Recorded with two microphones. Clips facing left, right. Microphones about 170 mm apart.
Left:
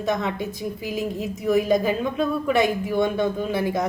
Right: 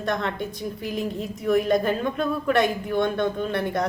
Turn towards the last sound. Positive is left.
turn(degrees=5)  # may be behind; listen again after turning